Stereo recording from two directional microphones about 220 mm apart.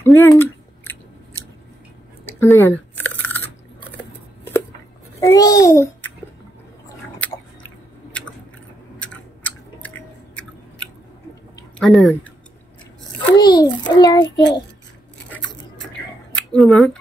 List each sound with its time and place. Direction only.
0.0 s a sound: 10° left (ahead or behind)
2.2 s chewing: 10° left (ahead or behind)
5.2 s a child's voice: 15° left (ahead or behind)
8.2 s chewing: 5° left (ahead or behind)
11.8 s speech: 5° left (ahead or behind)
13.4 s a sound: 20° left (ahead or behind)
13.9 s a child's voice: 20° left (ahead or behind)
14.3 s a child's voice: 55° left (ahead or behind)
16.3 s speech: centre (ahead or behind)